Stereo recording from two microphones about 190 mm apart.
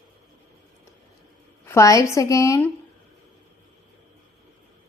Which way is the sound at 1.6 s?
15° left (ahead or behind).